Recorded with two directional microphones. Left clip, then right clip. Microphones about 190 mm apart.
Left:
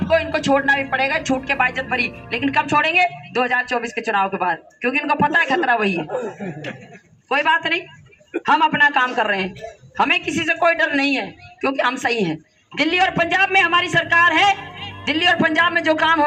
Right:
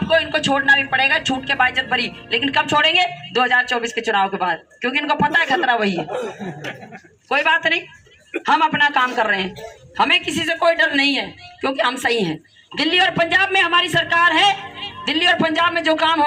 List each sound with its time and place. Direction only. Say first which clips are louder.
0.1 s speech: even; 10° right (ahead or behind)
7.3 s speech: right 1 dB; 30° right (ahead or behind)
8.7 s speech: left 1 dB; 15° right (ahead or behind); by 16.2 s centre (ahead or behind)